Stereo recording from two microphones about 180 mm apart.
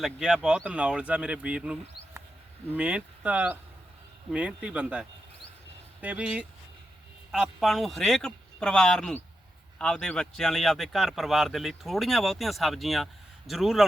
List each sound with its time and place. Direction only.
0.0 s speech: 5° right (ahead or behind)